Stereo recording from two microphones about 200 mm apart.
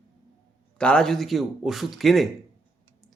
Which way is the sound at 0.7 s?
5° left (ahead or behind).